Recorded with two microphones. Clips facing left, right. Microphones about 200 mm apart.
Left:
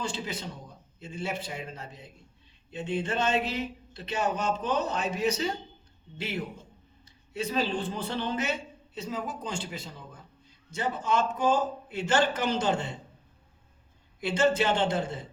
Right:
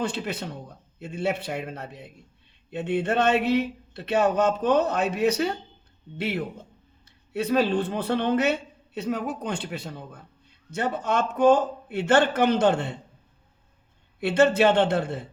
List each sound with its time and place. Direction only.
0.0 s speech: 65° right (ahead or behind)
14.2 s speech: 65° right (ahead or behind)